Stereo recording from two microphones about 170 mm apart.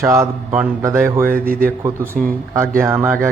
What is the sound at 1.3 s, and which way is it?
Speech, 60° right (ahead or behind).